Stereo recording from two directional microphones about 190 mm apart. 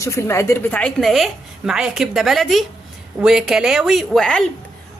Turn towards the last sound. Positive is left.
turn(degrees=5)  # may be behind; listen again after turning